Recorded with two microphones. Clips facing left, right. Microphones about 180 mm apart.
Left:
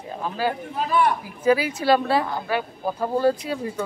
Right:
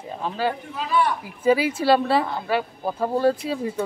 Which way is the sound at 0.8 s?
50° left (ahead or behind).